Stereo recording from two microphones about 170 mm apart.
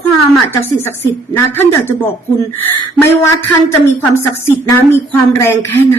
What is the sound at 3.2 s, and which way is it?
Speech, 15° left (ahead or behind).